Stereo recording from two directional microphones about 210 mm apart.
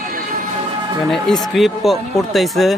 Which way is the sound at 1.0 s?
Centre (ahead or behind).